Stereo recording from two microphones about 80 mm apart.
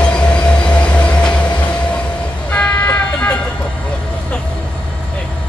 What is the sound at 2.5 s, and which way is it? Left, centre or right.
Vehicle, centre.